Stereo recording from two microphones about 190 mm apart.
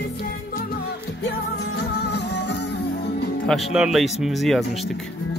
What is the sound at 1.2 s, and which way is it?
Music, 60° left (ahead or behind).